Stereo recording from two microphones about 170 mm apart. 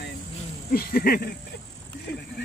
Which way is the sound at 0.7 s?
60° left (ahead or behind).